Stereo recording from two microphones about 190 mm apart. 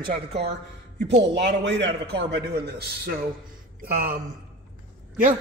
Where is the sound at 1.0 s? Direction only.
65° right (ahead or behind).